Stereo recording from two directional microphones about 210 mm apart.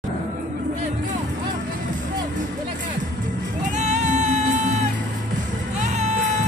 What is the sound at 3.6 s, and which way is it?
Music, 35° right (ahead or behind).